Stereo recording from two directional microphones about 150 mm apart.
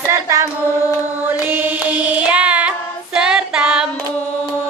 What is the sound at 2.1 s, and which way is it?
Child singing, 10° right (ahead or behind).